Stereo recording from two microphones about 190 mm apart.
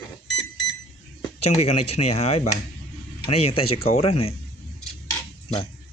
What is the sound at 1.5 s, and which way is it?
Speech, 35° left (ahead or behind).